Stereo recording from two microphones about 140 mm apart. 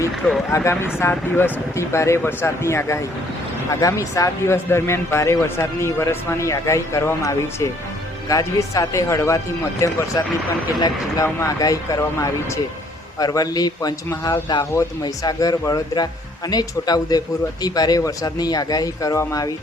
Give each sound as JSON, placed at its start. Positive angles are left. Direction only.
{"t": 0.5, "sound": "speech", "side_deg": 20}